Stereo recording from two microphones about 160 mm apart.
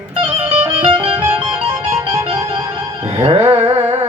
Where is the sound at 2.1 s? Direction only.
35° right (ahead or behind).